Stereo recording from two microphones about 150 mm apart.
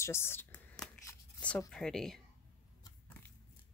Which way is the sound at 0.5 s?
5° left (ahead or behind).